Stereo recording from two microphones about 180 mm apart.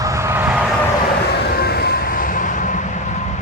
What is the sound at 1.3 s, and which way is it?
Vehicle, 60° left (ahead or behind).